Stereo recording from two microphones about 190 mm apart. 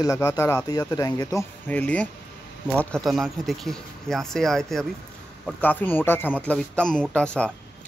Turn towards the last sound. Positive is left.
turn(degrees=5)  # may be behind; listen again after turning